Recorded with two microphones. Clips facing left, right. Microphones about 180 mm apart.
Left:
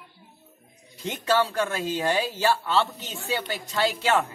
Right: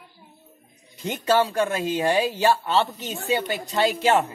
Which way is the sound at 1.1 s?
20° right (ahead or behind).